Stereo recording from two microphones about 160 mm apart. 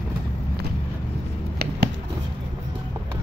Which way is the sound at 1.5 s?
90° right.